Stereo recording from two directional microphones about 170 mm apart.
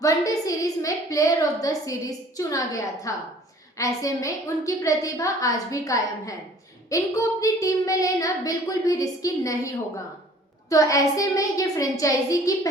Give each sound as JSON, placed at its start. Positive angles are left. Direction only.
{"t": 0.0, "sound": "a woman's voice", "side_deg": 20}